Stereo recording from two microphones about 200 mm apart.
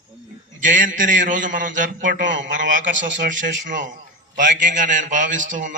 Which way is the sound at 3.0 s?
40° right (ahead or behind).